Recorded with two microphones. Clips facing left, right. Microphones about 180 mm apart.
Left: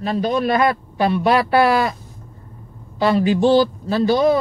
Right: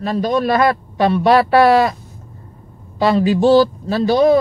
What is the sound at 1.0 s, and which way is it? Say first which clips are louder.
Speech: right 4 dB; 35° right (ahead or behind).